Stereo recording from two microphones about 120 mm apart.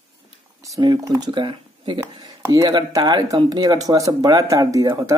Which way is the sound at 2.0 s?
30° right (ahead or behind).